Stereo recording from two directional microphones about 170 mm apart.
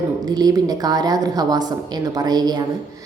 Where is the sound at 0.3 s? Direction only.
25° right (ahead or behind).